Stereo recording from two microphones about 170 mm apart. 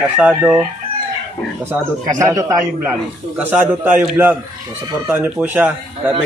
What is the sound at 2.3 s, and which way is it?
A man's voice, 20° right (ahead or behind).